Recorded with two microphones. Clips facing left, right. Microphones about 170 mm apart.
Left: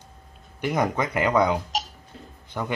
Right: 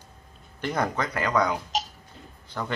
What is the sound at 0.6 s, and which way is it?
Speech, 15° left (ahead or behind).